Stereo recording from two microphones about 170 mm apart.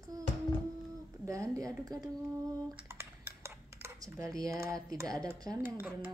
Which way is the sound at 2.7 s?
15° right (ahead or behind).